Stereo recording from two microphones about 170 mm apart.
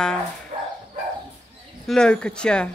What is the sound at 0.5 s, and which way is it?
Dog, 30° right (ahead or behind).